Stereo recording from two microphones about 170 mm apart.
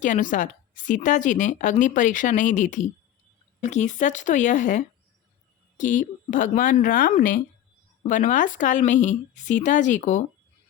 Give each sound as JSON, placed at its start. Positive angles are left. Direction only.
{"t": 0.0, "sound": "speech", "side_deg": 50}